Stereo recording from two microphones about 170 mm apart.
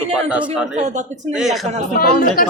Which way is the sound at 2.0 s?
55° left (ahead or behind).